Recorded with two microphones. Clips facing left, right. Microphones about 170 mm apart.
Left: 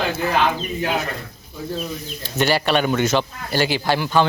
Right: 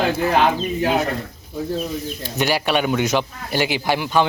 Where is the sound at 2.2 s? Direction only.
10° right (ahead or behind).